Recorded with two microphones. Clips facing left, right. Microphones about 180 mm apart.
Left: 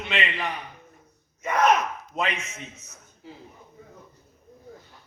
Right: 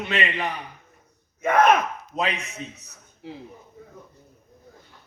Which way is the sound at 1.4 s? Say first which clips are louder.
Right 3 dB; 55° right (ahead or behind).